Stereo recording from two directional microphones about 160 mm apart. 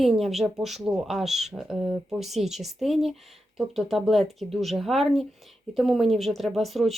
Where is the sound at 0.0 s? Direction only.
Centre (ahead or behind).